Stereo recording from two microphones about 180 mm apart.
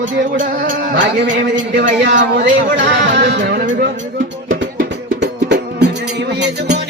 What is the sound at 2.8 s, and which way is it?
Music, 90° right.